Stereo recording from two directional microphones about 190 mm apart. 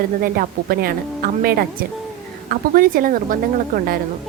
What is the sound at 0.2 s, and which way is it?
A woman's voice, 50° right (ahead or behind).